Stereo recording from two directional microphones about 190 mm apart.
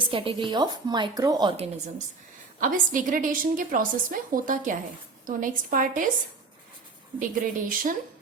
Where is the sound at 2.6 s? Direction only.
45° right (ahead or behind).